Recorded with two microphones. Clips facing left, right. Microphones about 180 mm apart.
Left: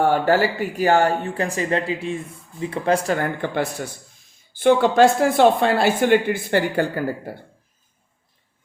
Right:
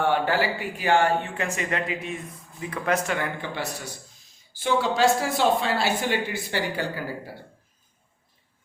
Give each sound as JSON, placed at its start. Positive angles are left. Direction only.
{"t": 0.0, "sound": "speech", "side_deg": 40}